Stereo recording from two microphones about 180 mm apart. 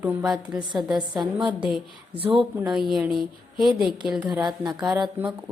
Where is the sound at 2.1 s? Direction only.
30° right (ahead or behind).